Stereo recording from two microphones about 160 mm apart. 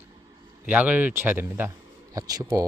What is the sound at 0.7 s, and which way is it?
Speech, 10° right (ahead or behind).